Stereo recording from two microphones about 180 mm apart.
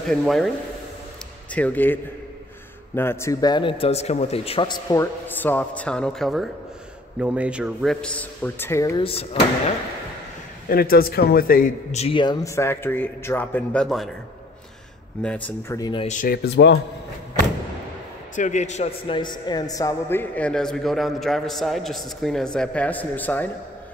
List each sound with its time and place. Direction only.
0.1 s a man's voice: centre (ahead or behind)
1.5 s a man's voice: 10° left (ahead or behind)
3.0 s speech: 15° left (ahead or behind)
5.4 s a man's voice: 10° left (ahead or behind)
9.0 s speech: 30° left (ahead or behind)
10.7 s speech: 55° left (ahead or behind); by 14.1 s centre (ahead or behind)
15.2 s a man's voice: 10° left (ahead or behind)
15.8 s speech: 25° left (ahead or behind)
16.1 s speech: 45° left (ahead or behind)
16.4 s speech: 75° left (ahead or behind)
18.3 s a man's voice: 40° left (ahead or behind); by 23.5 s 10° left (ahead or behind)